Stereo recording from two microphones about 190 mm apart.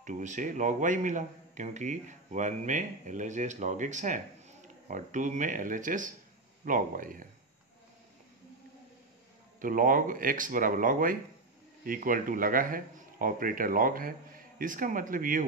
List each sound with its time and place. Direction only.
0.0 s a man's voice: 40° right (ahead or behind)
9.6 s speech: 45° right (ahead or behind)